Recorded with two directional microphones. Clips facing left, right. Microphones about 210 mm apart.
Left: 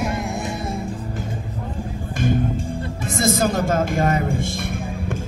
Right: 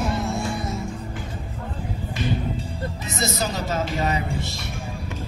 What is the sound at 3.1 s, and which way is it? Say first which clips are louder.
Music: left 8 dB; 50° left (ahead or behind).